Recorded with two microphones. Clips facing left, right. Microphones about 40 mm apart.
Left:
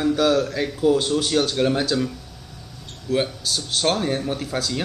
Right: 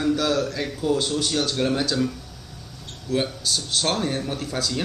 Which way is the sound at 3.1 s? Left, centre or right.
Centre.